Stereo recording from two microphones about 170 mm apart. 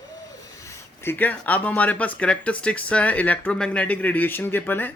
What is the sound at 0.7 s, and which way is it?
Speech, 15° left (ahead or behind).